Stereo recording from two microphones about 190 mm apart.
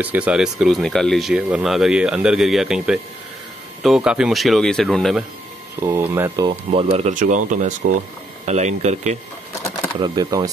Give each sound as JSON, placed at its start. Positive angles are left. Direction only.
{"t": 0.0, "sound": "speech", "side_deg": -5}
{"t": 5.8, "sound": "speech", "side_deg": -10}
{"t": 6.7, "sound": "speech", "side_deg": -30}
{"t": 9.9, "sound": "speech", "side_deg": -25}